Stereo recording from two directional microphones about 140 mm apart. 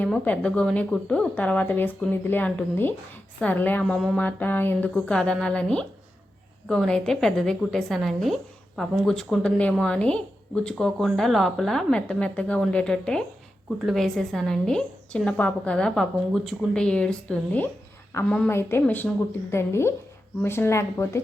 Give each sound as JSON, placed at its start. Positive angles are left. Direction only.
{"t": 0.0, "sound": "a woman's voice", "side_deg": 10}
{"t": 4.2, "sound": "a woman's voice", "side_deg": 10}